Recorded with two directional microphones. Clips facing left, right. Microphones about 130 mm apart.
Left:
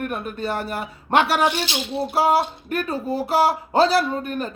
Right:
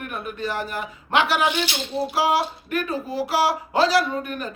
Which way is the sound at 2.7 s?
30° left (ahead or behind).